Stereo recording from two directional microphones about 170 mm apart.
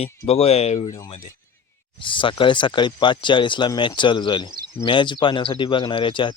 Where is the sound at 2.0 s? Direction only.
30° left (ahead or behind).